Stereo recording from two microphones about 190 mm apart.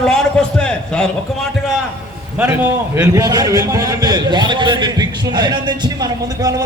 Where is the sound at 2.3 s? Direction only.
10° right (ahead or behind).